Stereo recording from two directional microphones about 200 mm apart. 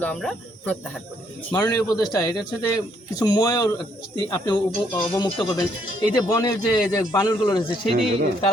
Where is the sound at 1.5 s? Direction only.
20° left (ahead or behind).